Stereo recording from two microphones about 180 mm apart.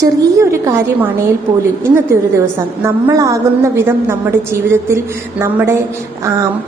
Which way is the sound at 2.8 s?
15° right (ahead or behind).